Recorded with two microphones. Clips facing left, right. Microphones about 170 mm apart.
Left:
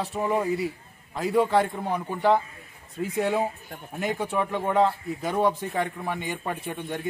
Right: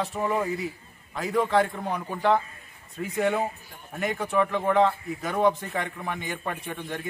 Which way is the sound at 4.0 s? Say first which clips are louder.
Left 1 dB; 30° left (ahead or behind).